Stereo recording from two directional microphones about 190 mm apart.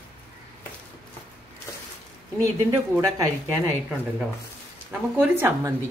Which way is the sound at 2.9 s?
15° right (ahead or behind).